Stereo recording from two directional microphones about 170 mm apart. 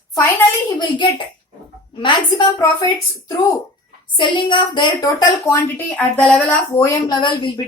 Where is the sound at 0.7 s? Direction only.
30° left (ahead or behind).